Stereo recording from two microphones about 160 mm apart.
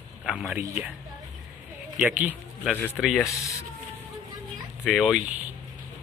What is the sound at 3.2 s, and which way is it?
Speech, 20° left (ahead or behind).